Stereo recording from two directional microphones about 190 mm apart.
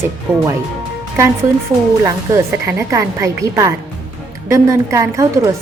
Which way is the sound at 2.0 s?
15° right (ahead or behind).